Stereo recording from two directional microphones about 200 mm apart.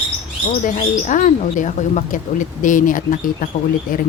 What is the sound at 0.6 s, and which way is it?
Speech, 40° left (ahead or behind).